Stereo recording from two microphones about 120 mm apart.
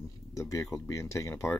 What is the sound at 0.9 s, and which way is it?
Speech, 25° left (ahead or behind).